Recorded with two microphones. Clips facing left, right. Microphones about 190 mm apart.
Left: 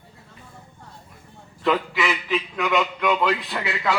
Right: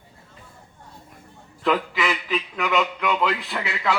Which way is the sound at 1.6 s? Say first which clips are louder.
Even; centre (ahead or behind).